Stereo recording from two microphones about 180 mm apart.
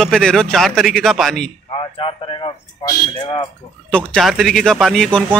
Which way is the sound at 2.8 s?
30° left (ahead or behind).